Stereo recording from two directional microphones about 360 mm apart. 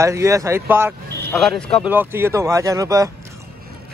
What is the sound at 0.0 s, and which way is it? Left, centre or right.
Speech, centre.